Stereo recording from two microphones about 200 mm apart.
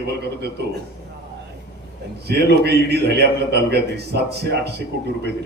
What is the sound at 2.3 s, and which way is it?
A man's voice, 55° right (ahead or behind).